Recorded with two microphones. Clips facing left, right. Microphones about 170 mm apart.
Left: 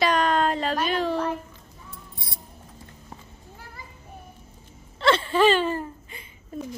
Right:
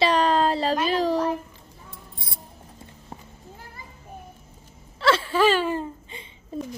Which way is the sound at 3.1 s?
30° right (ahead or behind).